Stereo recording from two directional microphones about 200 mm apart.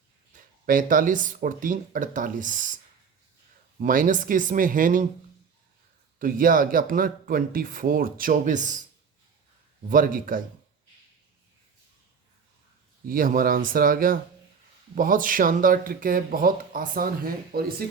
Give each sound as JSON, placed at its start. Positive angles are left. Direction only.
{"t": 0.6, "sound": "speech", "side_deg": -45}
{"t": 3.8, "sound": "speech", "side_deg": -40}
{"t": 6.1, "sound": "speech", "side_deg": -45}
{"t": 9.9, "sound": "speech", "side_deg": -45}
{"t": 13.1, "sound": "speech", "side_deg": -45}